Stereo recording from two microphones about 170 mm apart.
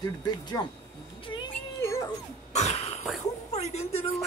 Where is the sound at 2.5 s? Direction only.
40° left (ahead or behind).